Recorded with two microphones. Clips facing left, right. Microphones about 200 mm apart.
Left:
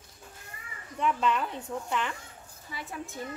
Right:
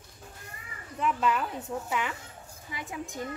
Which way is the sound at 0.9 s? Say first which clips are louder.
Even; 5° right (ahead or behind).